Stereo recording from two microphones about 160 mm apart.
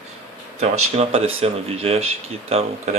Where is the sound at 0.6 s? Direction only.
40° right (ahead or behind).